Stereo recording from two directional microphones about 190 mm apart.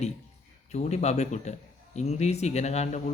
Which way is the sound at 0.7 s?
35° left (ahead or behind).